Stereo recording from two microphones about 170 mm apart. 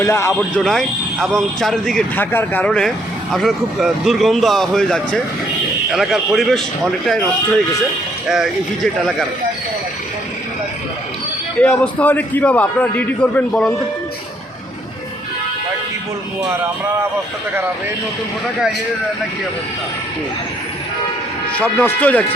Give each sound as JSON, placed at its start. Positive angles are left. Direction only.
{"t": 0.0, "sound": "a man's voice", "side_deg": 15}
{"t": 0.3, "sound": "speech", "side_deg": 0}
{"t": 11.6, "sound": "a man's voice", "side_deg": 10}
{"t": 21.5, "sound": "a man's voice", "side_deg": 10}